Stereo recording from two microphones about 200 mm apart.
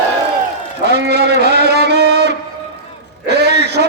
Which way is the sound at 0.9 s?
55° right (ahead or behind).